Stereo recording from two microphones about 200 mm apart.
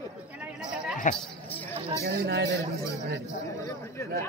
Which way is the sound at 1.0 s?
40° left (ahead or behind).